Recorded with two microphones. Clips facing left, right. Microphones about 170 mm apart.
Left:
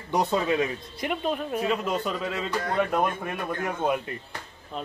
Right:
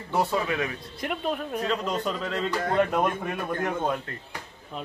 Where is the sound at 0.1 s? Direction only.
20° left (ahead or behind).